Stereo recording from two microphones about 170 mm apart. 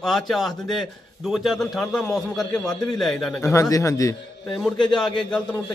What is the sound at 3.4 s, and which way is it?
Speech, 20° left (ahead or behind).